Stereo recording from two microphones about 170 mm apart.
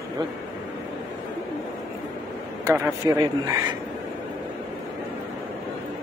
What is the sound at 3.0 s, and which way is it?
Speech, 20° right (ahead or behind).